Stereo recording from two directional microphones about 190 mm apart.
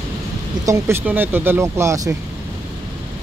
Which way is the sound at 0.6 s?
15° right (ahead or behind).